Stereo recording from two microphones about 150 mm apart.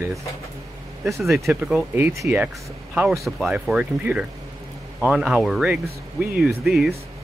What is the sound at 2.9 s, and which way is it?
Speech, 5° right (ahead or behind).